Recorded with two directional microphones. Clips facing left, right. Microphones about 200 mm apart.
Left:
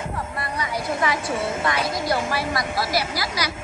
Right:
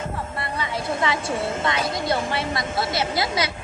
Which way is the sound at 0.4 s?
25° right (ahead or behind).